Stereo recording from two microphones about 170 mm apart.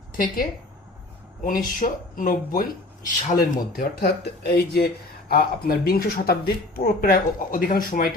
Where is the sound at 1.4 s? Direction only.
55° left (ahead or behind).